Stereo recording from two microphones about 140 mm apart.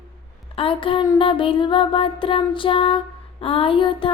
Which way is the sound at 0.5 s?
40° left (ahead or behind).